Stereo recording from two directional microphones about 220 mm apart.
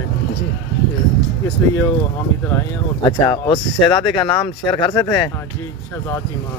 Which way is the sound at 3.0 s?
20° left (ahead or behind).